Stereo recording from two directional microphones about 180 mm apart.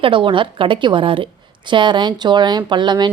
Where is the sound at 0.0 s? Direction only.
30° right (ahead or behind).